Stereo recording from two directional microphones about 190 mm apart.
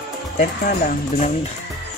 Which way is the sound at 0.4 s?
45° left (ahead or behind).